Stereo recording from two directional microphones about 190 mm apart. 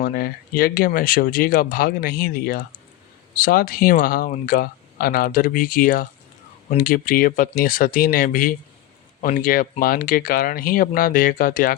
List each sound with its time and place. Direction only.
0.0 s speech: 50° left (ahead or behind)